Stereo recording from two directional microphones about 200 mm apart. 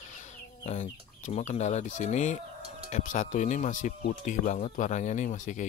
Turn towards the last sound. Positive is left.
turn(degrees=40)  # may be behind; listen again after turning